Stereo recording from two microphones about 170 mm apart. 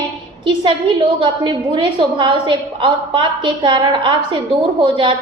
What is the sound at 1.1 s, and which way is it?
A woman's voice, 30° right (ahead or behind).